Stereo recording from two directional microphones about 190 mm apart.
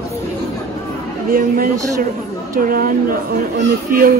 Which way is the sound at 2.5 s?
45° right (ahead or behind).